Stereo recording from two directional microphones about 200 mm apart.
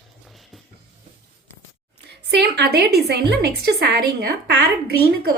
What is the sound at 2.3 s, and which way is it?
A woman's voice, 55° right (ahead or behind).